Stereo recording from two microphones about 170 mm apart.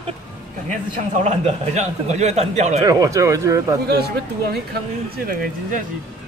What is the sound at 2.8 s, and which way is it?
Speech, 20° right (ahead or behind).